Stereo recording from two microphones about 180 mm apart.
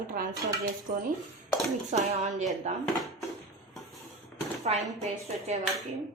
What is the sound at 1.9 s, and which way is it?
Speech, 40° right (ahead or behind).